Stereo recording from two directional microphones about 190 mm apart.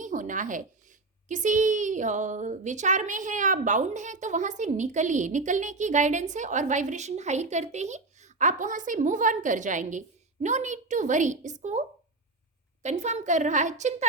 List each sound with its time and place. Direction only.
0.0 s a sound: 40° right (ahead or behind)
1.3 s a woman's voice: 40° right (ahead or behind)
12.8 s a woman's voice: 35° right (ahead or behind)